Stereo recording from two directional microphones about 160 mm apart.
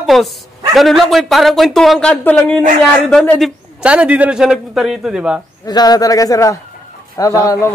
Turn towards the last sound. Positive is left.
turn(degrees=20)  # may be behind; listen again after turning